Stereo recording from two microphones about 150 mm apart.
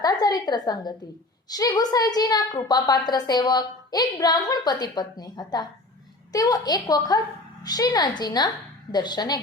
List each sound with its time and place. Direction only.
0.0 s a woman's voice: 25° left (ahead or behind)